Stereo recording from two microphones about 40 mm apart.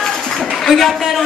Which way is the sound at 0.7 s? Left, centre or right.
Centre.